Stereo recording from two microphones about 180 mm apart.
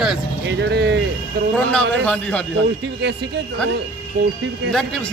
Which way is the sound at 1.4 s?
65° right (ahead or behind).